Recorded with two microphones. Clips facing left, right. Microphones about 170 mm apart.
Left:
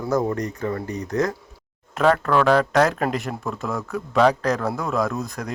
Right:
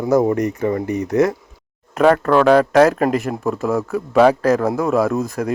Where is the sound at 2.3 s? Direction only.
20° right (ahead or behind).